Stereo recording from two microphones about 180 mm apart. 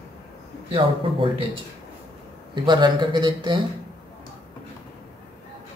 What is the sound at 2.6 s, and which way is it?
Speech, 25° right (ahead or behind).